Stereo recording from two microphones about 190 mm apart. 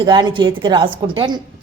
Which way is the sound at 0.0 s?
25° right (ahead or behind).